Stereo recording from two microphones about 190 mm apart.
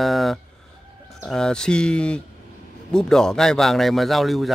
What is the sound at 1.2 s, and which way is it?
A man's voice, 5° left (ahead or behind).